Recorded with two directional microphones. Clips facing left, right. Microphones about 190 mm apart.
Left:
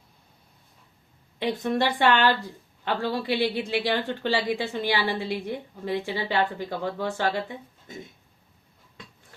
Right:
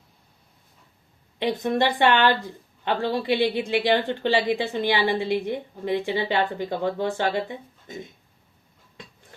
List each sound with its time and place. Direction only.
1.4 s a woman's voice: 15° right (ahead or behind)